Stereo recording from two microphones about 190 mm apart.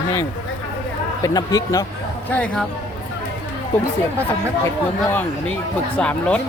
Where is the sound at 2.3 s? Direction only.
5° left (ahead or behind).